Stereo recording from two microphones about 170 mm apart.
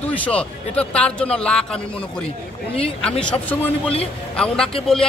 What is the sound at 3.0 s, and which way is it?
Speech, 5° left (ahead or behind).